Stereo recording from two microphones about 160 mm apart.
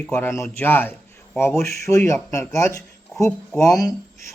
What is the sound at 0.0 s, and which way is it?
A man's voice, 15° left (ahead or behind).